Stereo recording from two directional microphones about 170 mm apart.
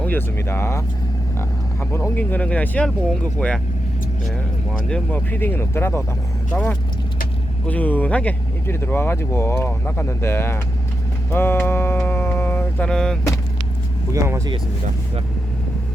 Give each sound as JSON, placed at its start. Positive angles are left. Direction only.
{"t": 0.0, "sound": "speech", "side_deg": 10}
{"t": 4.9, "sound": "speech", "side_deg": 10}
{"t": 11.9, "sound": "mantra", "side_deg": 10}
{"t": 14.1, "sound": "speech", "side_deg": -20}